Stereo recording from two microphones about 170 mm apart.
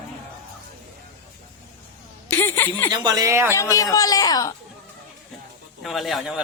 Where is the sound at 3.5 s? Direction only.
20° left (ahead or behind).